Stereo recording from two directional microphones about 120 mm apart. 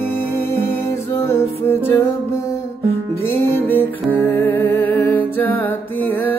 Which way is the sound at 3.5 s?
15° left (ahead or behind).